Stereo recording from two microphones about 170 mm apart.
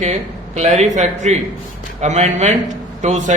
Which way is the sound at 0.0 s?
40° right (ahead or behind).